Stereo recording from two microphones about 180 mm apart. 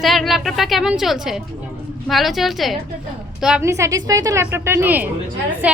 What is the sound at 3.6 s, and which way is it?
A woman's voice, 15° right (ahead or behind).